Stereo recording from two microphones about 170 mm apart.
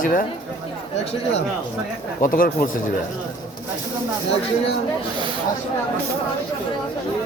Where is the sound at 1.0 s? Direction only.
40° left (ahead or behind).